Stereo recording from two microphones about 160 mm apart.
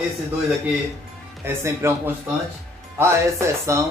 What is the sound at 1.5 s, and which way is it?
Speech, 15° right (ahead or behind).